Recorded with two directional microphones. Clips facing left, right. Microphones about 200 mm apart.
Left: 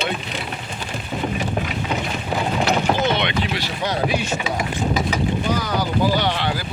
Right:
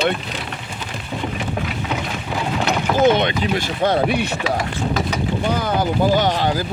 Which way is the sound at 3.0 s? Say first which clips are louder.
Right 5 dB; 50° right (ahead or behind).